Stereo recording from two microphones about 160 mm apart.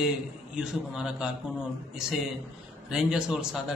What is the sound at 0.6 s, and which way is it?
A man's voice, 5° right (ahead or behind).